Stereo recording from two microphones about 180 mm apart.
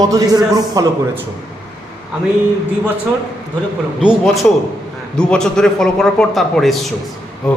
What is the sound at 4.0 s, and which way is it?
A man's voice, 5° right (ahead or behind).